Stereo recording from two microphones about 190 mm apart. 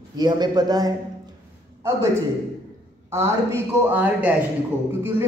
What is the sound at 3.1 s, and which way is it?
A man's voice, 15° right (ahead or behind).